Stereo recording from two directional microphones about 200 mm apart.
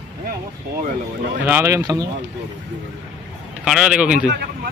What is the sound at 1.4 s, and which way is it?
Speech, 10° right (ahead or behind).